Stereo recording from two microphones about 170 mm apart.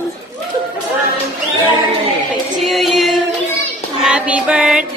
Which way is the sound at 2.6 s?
Centre (ahead or behind).